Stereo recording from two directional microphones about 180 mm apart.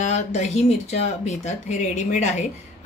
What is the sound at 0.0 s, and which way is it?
Speech, 40° left (ahead or behind).